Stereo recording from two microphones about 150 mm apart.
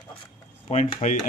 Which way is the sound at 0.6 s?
55° left (ahead or behind).